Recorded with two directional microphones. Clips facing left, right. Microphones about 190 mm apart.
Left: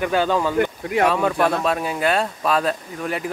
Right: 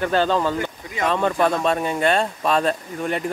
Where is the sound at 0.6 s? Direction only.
60° left (ahead or behind).